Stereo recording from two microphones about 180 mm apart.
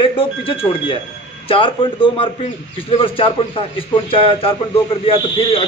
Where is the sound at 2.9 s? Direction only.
30° left (ahead or behind).